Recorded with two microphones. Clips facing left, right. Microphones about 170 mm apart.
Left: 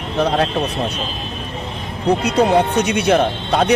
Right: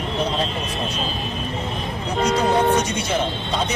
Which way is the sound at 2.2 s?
65° left (ahead or behind).